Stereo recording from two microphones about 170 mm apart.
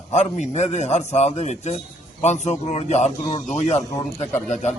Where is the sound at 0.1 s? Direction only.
45° left (ahead or behind).